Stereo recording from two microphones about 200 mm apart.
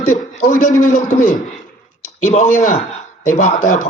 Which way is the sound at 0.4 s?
40° left (ahead or behind).